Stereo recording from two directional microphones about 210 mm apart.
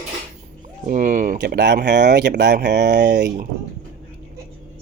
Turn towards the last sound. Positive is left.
turn(degrees=-55)  # may be behind; listen again after turning